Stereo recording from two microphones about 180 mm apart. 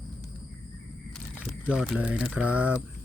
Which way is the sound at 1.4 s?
5° right (ahead or behind).